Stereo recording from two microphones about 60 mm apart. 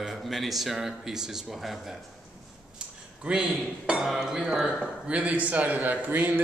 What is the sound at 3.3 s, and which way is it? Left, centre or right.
Speech, right.